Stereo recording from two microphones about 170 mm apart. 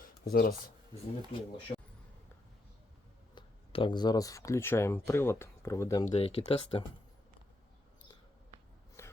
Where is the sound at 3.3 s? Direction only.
30° left (ahead or behind).